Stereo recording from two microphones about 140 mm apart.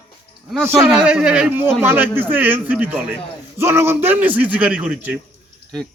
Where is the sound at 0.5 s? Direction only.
Centre (ahead or behind).